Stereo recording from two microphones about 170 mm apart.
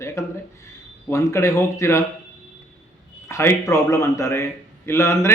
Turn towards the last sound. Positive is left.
turn(degrees=15)  # may be behind; listen again after turning